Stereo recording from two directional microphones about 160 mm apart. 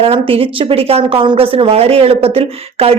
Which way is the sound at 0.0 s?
35° right (ahead or behind).